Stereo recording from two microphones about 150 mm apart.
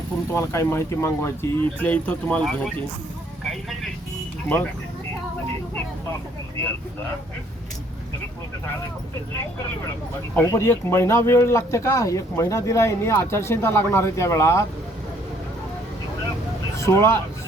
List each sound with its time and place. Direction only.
0.3 s speech: 20° left (ahead or behind); by 2.7 s 5° left (ahead or behind)
3.4 s vehicle: centre (ahead or behind)
4.4 s speech: 10° left (ahead or behind)
10.3 s speech: 20° left (ahead or behind)
16.7 s speech: 20° left (ahead or behind)